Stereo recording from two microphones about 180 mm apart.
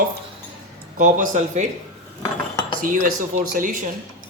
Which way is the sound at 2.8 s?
50° right (ahead or behind).